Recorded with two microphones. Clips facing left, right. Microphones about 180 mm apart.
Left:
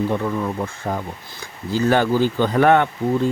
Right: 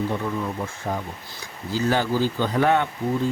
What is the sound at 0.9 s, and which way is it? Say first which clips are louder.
Speech: left 3 dB; 70° left (ahead or behind).